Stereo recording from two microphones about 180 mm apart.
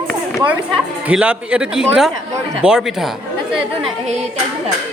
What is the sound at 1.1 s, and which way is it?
Speech, 5° right (ahead or behind).